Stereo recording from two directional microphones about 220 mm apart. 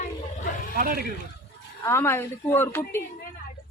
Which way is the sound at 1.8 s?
10° left (ahead or behind).